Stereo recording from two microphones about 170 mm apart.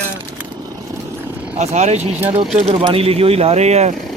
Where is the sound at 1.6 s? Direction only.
40° right (ahead or behind).